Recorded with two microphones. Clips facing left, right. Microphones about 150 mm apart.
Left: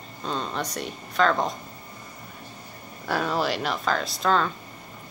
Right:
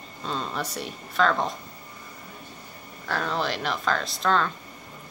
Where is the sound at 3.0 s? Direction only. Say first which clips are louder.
Left 2 dB; 10° left (ahead or behind).